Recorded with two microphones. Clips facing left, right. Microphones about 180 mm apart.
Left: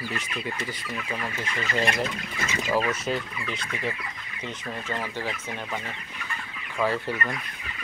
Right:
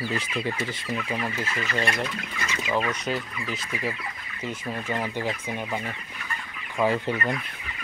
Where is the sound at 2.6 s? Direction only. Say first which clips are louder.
Left 1 dB; 5° left (ahead or behind).